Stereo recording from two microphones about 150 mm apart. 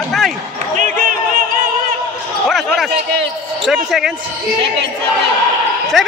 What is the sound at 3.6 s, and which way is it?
Speech, centre (ahead or behind).